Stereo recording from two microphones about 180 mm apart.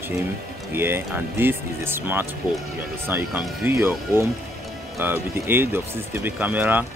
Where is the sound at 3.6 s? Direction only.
15° right (ahead or behind).